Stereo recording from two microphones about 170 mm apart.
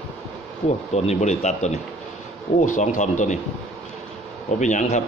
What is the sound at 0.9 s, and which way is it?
Speech, 40° left (ahead or behind).